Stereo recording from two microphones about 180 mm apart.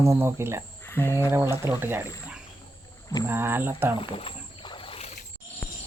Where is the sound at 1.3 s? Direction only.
15° right (ahead or behind).